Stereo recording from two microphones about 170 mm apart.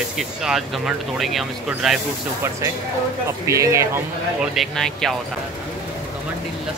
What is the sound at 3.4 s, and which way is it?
Speech, 15° right (ahead or behind).